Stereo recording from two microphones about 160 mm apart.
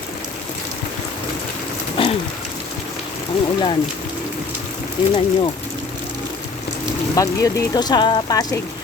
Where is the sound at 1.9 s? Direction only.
35° left (ahead or behind).